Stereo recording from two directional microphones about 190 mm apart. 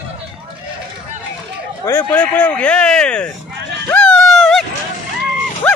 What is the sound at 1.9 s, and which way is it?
Speech, 10° left (ahead or behind).